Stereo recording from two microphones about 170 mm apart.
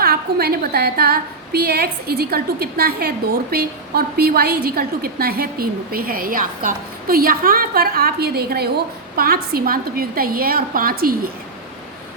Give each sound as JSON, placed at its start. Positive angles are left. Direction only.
{"t": 0.0, "sound": "a woman's voice", "side_deg": -65}